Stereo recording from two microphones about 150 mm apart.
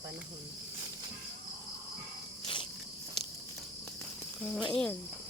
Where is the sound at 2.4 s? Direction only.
35° left (ahead or behind).